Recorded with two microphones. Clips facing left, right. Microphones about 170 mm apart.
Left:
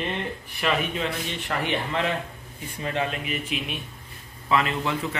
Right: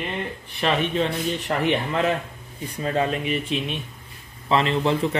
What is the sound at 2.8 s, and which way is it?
A man's voice, 35° right (ahead or behind).